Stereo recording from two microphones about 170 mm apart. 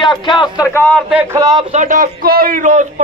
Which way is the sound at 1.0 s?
5° right (ahead or behind).